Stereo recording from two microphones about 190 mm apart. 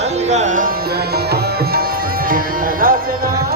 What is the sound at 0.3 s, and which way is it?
Music, 40° right (ahead or behind).